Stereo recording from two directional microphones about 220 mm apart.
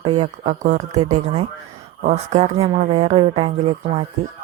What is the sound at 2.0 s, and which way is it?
Speech, 30° right (ahead or behind).